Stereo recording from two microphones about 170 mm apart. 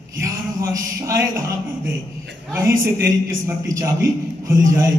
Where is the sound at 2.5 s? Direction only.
15° right (ahead or behind).